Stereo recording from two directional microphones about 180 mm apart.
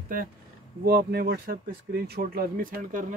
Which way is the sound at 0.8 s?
60° right (ahead or behind).